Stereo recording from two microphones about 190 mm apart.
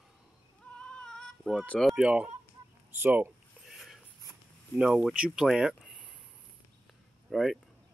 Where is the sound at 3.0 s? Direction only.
10° right (ahead or behind).